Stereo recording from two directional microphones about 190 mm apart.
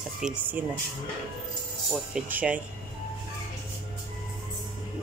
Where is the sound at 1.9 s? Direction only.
5° right (ahead or behind).